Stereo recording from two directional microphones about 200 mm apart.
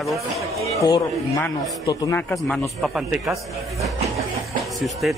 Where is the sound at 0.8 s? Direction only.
20° left (ahead or behind).